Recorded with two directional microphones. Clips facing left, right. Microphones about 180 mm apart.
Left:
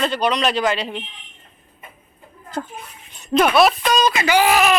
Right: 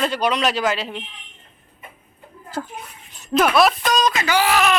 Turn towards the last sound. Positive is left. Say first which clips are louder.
# left 3 dB
turn(degrees=15)  # may be behind; listen again after turning